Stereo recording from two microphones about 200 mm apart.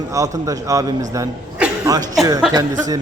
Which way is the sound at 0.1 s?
15° right (ahead or behind).